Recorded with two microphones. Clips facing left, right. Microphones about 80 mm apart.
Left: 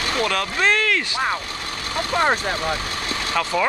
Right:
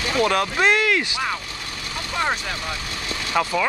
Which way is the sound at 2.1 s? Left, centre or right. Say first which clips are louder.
Left 4 dB; left.